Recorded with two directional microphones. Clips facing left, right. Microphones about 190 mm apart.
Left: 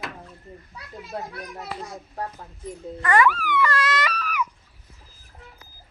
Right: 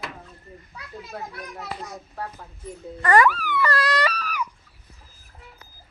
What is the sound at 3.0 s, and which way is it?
Speech, 40° right (ahead or behind).